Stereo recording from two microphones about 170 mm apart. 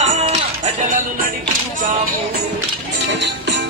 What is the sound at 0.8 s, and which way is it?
Music, 50° right (ahead or behind).